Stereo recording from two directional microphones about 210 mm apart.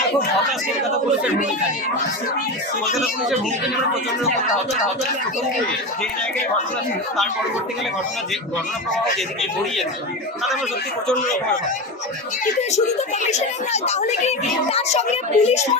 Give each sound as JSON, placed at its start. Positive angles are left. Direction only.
{"t": 12.7, "sound": "speech", "side_deg": 35}